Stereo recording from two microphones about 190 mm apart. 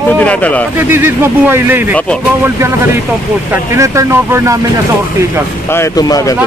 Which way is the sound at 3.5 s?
15° right (ahead or behind).